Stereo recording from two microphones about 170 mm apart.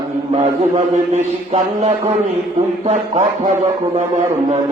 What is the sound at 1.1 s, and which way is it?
A man's voice, 40° right (ahead or behind).